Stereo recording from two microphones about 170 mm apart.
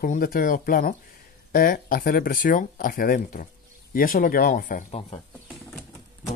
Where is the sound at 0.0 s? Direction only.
55° left (ahead or behind).